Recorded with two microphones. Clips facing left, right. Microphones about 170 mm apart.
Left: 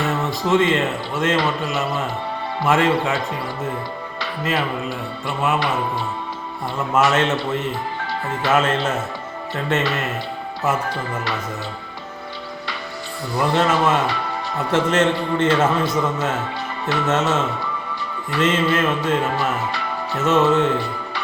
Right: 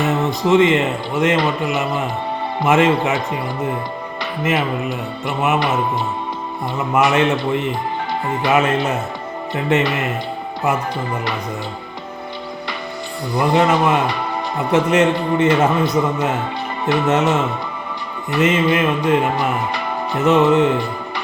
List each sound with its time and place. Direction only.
0.0 s a man's voice: 20° right (ahead or behind)
4.2 s a man's voice: 20° right (ahead or behind)
6.7 s a man's voice: 15° right (ahead or behind)
13.3 s a man's voice: 15° right (ahead or behind)